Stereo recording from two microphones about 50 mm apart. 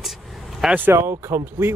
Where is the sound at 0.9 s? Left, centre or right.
Right.